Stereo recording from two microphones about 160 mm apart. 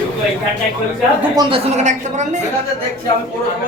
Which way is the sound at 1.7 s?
45° right (ahead or behind).